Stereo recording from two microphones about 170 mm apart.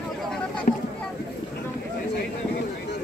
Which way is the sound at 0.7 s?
50° left (ahead or behind).